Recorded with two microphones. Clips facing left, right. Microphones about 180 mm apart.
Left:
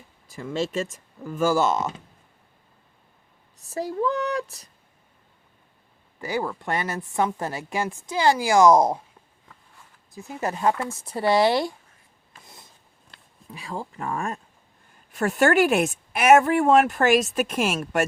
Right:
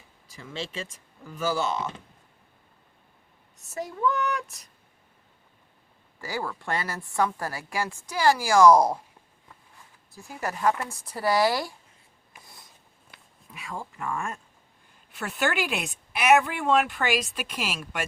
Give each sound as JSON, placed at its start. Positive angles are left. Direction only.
{"t": 0.3, "sound": "speech", "side_deg": 50}
{"t": 3.6, "sound": "a woman's voice", "side_deg": 35}
{"t": 6.1, "sound": "a woman's voice", "side_deg": 20}
{"t": 10.1, "sound": "a woman's voice", "side_deg": 20}
{"t": 13.5, "sound": "a woman's voice", "side_deg": 30}